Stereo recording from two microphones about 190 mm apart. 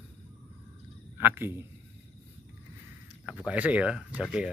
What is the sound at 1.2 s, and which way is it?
Speech, 10° right (ahead or behind).